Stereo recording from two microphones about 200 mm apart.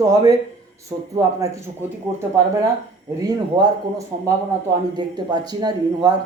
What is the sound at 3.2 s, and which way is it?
Speech, 20° right (ahead or behind).